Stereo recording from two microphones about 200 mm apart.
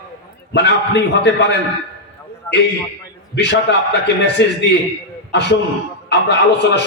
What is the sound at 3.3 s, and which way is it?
A man's voice, 60° left (ahead or behind).